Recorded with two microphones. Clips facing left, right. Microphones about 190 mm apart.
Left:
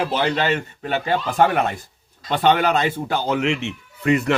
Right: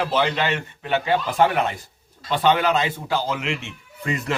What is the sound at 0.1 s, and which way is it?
A man's voice, 40° left (ahead or behind).